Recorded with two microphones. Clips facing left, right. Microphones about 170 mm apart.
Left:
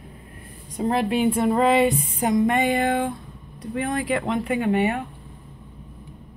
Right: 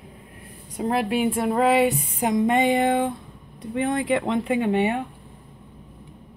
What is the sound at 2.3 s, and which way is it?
Speech, 20° right (ahead or behind).